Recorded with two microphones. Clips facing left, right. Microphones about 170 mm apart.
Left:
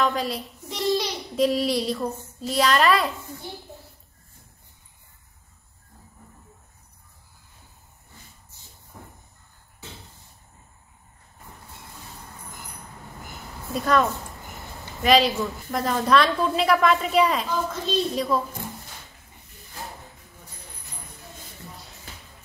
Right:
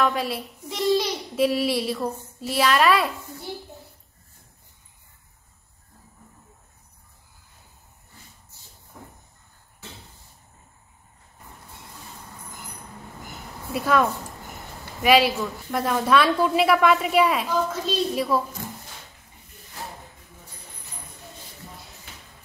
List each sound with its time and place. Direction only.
0.0 s a child's voice: 5° right (ahead or behind)
13.7 s a woman's voice: 5° right (ahead or behind)
15.0 s a woman's voice: 5° right (ahead or behind)